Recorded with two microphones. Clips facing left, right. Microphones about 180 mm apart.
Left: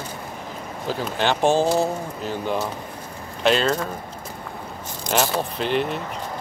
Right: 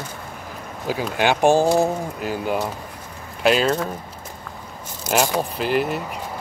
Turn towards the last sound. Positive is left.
turn(degrees=-5)  # may be behind; listen again after turning